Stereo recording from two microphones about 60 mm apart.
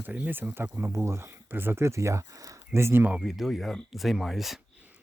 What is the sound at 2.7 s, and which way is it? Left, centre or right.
Speech, right.